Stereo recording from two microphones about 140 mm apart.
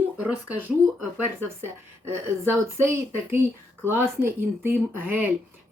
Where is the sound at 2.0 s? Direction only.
20° right (ahead or behind).